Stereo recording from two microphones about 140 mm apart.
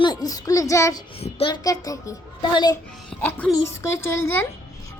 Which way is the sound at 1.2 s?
40° left (ahead or behind).